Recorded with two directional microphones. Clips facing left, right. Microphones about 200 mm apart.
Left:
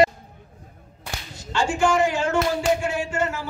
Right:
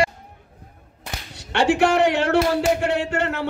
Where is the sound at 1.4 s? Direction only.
65° right (ahead or behind).